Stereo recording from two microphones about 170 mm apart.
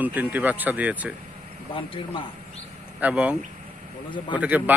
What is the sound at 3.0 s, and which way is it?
Speech, 10° right (ahead or behind).